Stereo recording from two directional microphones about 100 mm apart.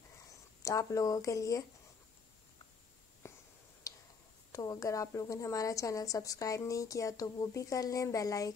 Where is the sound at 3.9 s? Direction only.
35° left (ahead or behind).